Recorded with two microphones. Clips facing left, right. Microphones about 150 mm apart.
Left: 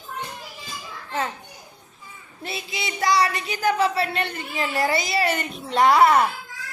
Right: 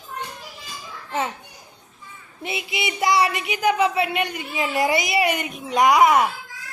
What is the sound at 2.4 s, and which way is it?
Speech, 20° right (ahead or behind).